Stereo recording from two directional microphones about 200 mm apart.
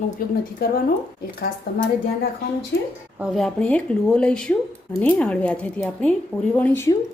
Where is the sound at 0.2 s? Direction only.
45° left (ahead or behind).